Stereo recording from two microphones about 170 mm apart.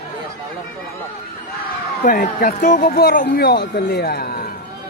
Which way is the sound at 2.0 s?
55° left (ahead or behind).